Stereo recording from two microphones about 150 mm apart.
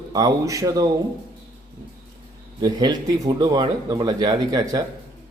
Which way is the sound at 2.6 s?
25° right (ahead or behind).